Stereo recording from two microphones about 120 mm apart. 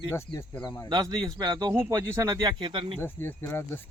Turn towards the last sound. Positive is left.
turn(degrees=20)  # may be behind; listen again after turning